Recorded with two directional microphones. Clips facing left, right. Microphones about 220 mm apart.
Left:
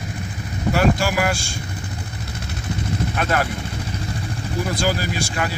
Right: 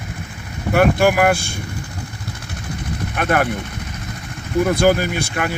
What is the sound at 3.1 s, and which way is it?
Speech, 55° right (ahead or behind).